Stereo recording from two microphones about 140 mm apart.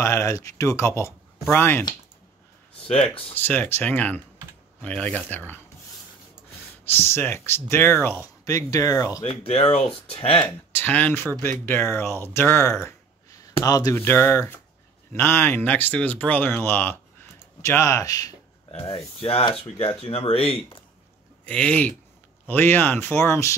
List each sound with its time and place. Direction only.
0.0 s speech: 20° left (ahead or behind)
3.3 s speech: 15° left (ahead or behind)
6.8 s speech: 15° left (ahead or behind)
9.2 s speech: 45° left (ahead or behind)
10.4 s speech: 15° left (ahead or behind)
18.7 s speech: 40° left (ahead or behind)
21.5 s speech: 10° left (ahead or behind)